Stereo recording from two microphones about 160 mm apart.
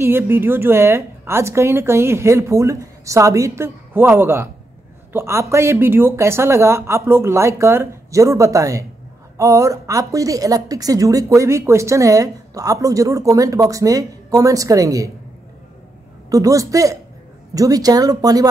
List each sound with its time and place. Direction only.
0.0 s a woman's voice: 15° right (ahead or behind)
16.3 s a woman's voice: 20° right (ahead or behind)